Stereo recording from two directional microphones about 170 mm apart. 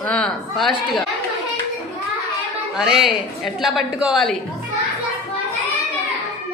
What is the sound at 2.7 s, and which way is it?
A woman's voice, centre (ahead or behind).